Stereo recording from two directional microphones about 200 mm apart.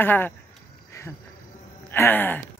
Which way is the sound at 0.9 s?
15° left (ahead or behind).